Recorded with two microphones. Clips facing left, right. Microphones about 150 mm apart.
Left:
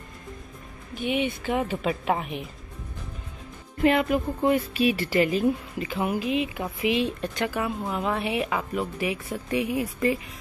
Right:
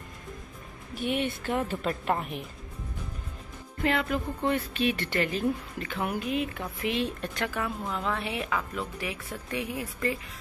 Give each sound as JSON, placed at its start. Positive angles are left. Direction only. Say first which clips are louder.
{"t": 0.9, "sound": "speech", "louder": "left 3 dB", "side_deg": 0}
{"t": 3.8, "sound": "a woman's voice", "louder": "left 6 dB", "side_deg": 15}
{"t": 7.8, "sound": "a woman's voice", "louder": "left 4 dB", "side_deg": 15}